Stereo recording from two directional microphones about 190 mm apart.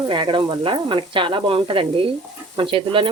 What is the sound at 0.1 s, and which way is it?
Speech, 25° right (ahead or behind).